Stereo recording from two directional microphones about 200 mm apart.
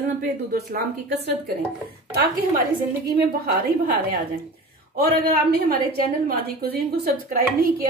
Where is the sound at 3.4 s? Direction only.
50° right (ahead or behind).